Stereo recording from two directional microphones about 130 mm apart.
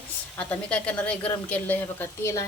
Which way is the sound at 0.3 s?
10° left (ahead or behind).